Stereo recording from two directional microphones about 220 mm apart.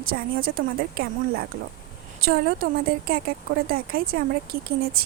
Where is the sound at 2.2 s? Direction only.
45° right (ahead or behind).